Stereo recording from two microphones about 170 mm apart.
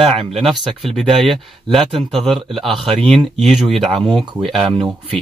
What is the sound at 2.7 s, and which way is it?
Speech, 30° right (ahead or behind).